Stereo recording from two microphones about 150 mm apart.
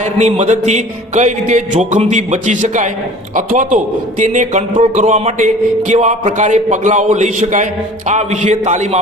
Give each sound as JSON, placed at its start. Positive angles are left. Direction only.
{"t": 0.0, "sound": "a man's voice", "side_deg": -50}